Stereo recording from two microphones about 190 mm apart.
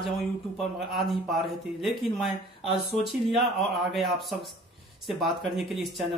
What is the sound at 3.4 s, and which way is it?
Speech, centre (ahead or behind).